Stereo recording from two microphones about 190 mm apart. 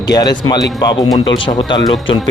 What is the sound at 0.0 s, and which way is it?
Speech, 20° left (ahead or behind).